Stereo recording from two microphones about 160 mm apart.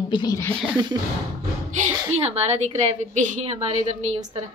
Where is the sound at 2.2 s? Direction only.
50° right (ahead or behind).